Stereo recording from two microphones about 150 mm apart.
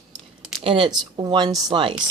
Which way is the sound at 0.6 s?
35° right (ahead or behind).